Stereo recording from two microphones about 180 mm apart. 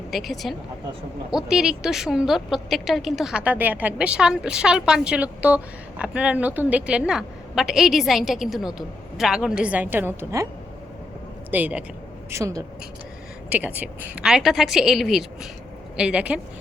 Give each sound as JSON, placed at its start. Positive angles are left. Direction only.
{"t": 0.1, "sound": "a woman's voice", "side_deg": 0}
{"t": 11.5, "sound": "a woman's voice", "side_deg": -10}